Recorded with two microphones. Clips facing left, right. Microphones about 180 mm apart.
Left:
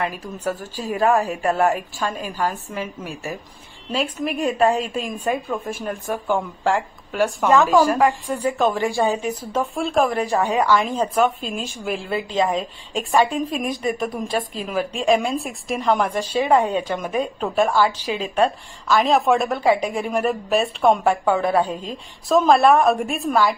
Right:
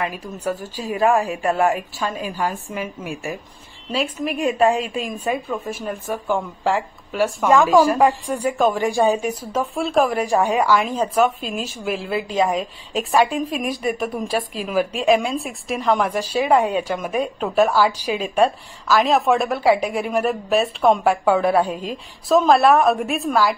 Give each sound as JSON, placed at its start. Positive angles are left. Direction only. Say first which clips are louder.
{"t": 0.0, "sound": "a woman's voice", "louder": "even", "side_deg": -10}
{"t": 4.6, "sound": "a woman's voice", "louder": "right 1 dB", "side_deg": -10}
{"t": 4.8, "sound": "a woman's voice", "louder": "even", "side_deg": 40}
{"t": 5.7, "sound": "a woman's voice", "louder": "even", "side_deg": -5}
{"t": 18.9, "sound": "a woman's voice", "louder": "even", "side_deg": 0}